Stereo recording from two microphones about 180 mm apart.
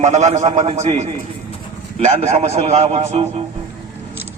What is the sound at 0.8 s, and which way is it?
A man's voice, 35° right (ahead or behind).